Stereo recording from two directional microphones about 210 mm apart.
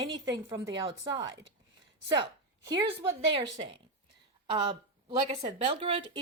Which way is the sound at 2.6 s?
20° right (ahead or behind).